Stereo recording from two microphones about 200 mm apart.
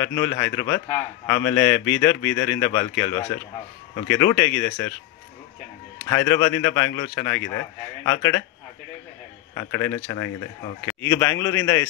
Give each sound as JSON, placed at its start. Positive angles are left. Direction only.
{"t": 0.0, "sound": "a man's voice", "side_deg": 10}
{"t": 6.0, "sound": "a man's voice", "side_deg": 15}
{"t": 9.6, "sound": "a man's voice", "side_deg": 15}